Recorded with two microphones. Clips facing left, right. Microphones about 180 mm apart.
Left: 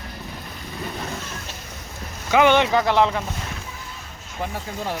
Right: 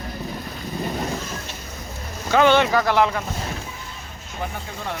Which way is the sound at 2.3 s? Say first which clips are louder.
Even; 15° left (ahead or behind).